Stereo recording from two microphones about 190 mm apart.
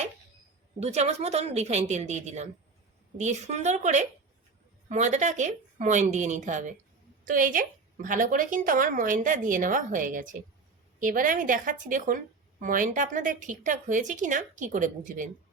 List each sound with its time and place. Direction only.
0.8 s a woman's voice: 35° right (ahead or behind)